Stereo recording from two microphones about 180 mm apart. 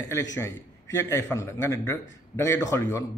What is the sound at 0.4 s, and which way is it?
A man's voice, 15° left (ahead or behind).